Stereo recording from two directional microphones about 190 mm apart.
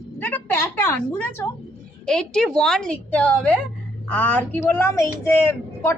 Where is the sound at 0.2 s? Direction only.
10° left (ahead or behind).